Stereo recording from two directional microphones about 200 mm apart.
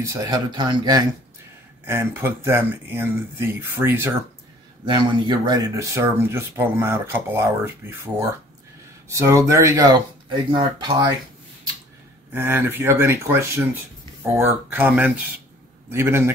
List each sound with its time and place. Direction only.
0.0 s speech: 15° right (ahead or behind)
1.9 s speech: 10° right (ahead or behind)
4.8 s speech: 20° right (ahead or behind)
9.1 s speech: 15° right (ahead or behind)
12.3 s speech: 10° right (ahead or behind)